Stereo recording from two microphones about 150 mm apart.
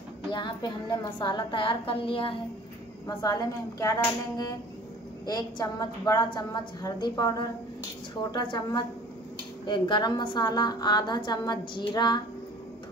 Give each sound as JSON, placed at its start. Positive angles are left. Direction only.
{"t": 0.3, "sound": "a woman's voice", "side_deg": 30}
{"t": 3.1, "sound": "a woman's voice", "side_deg": 25}
{"t": 5.2, "sound": "a woman's voice", "side_deg": 30}